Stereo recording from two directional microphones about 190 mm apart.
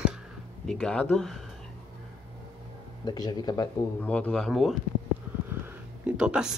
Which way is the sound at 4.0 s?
5° left (ahead or behind).